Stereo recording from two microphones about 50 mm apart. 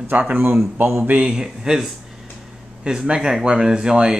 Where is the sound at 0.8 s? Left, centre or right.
Right.